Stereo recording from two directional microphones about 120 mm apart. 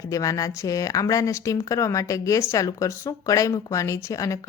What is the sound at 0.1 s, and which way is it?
Speech, 30° left (ahead or behind).